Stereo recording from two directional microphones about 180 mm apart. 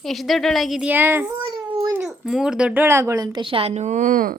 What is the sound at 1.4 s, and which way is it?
Baby cry, 25° right (ahead or behind).